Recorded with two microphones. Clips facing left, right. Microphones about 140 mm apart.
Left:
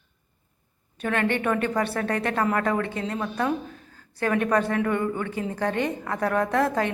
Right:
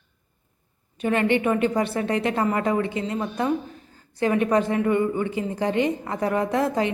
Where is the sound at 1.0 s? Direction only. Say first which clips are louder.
Right 4 dB; 5° right (ahead or behind).